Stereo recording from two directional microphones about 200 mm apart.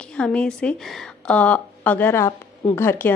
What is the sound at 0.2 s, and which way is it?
A woman's voice, 5° left (ahead or behind).